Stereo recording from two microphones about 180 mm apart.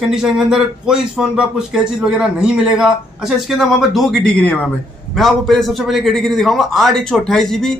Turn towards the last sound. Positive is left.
turn(degrees=5)  # may be behind; listen again after turning